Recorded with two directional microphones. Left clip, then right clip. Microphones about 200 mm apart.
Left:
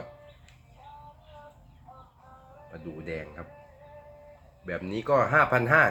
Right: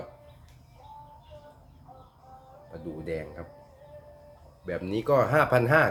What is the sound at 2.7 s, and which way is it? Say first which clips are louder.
Speech: right 3 dB; 10° right (ahead or behind).